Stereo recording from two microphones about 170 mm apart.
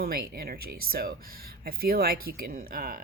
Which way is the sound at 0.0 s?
60° right (ahead or behind).